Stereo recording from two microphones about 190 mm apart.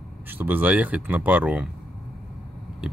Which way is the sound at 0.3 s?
10° right (ahead or behind).